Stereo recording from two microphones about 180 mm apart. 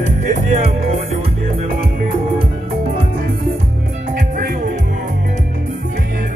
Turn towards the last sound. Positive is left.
turn(degrees=-50)  # may be behind; listen again after turning